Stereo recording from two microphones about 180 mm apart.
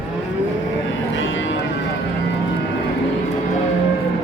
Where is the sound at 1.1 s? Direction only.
90° left.